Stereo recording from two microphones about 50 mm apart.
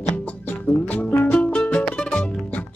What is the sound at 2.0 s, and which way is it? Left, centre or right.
Music, centre.